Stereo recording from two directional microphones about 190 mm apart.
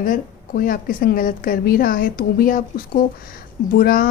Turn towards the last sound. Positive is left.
turn(degrees=50)  # may be behind; listen again after turning